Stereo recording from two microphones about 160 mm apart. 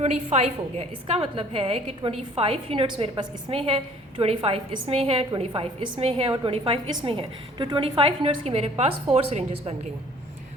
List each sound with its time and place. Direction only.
0.0 s a woman's voice: 45° right (ahead or behind)